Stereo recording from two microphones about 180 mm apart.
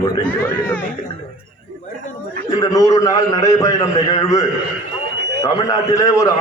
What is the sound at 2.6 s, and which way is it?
A man's voice, 20° left (ahead or behind).